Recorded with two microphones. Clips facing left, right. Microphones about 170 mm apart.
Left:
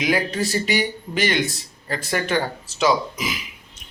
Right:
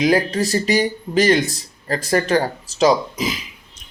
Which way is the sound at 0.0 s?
35° right (ahead or behind).